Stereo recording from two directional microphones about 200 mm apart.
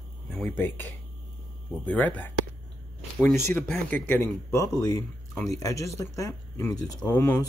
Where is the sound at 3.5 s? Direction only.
5° left (ahead or behind).